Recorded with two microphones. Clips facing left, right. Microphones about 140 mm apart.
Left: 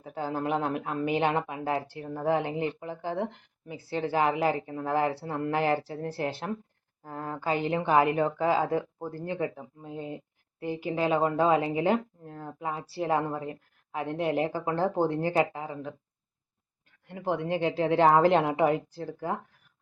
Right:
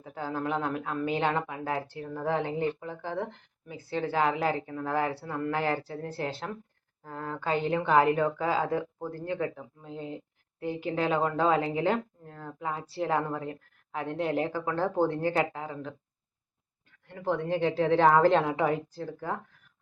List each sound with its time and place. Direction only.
0.0 s a woman's voice: 25° left (ahead or behind)
17.1 s a woman's voice: 15° left (ahead or behind)